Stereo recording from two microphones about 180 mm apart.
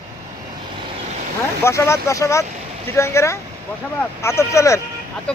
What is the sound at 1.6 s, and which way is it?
Speech, 15° left (ahead or behind).